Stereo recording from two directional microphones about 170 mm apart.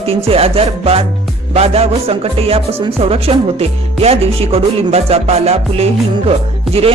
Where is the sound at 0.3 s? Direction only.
35° right (ahead or behind).